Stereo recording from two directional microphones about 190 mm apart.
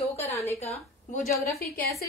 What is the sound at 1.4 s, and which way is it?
Speech, 55° left (ahead or behind).